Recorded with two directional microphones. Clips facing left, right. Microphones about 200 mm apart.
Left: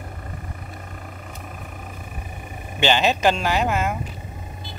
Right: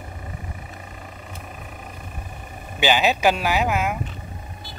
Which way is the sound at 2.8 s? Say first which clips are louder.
Even; 5° right (ahead or behind).